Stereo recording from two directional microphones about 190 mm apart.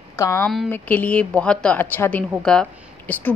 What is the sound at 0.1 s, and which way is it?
A woman's voice, 15° left (ahead or behind).